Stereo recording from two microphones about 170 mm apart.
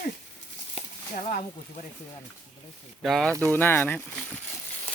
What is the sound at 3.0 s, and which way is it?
Speech, centre (ahead or behind).